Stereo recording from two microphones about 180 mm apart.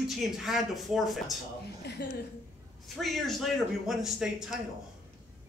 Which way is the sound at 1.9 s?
70° left (ahead or behind).